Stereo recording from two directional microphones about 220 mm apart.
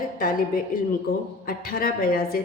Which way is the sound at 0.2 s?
40° left (ahead or behind).